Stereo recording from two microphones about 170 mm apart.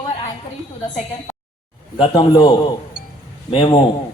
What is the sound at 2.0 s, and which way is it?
Speech, 25° left (ahead or behind).